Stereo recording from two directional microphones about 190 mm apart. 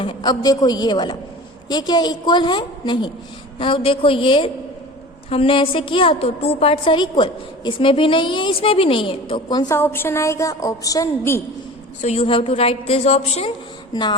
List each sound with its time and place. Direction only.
0.0 s a woman's voice: 25° left (ahead or behind)
12.0 s a woman's voice: 30° left (ahead or behind)
13.9 s a woman's voice: 25° left (ahead or behind)